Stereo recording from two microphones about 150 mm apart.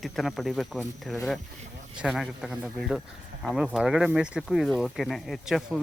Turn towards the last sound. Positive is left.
turn(degrees=0)  # may be behind; listen again after turning